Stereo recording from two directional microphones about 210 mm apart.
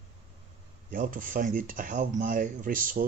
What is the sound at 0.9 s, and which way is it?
Speech, 40° right (ahead or behind).